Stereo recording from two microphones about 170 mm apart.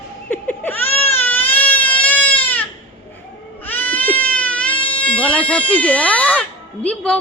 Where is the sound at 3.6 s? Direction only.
10° left (ahead or behind).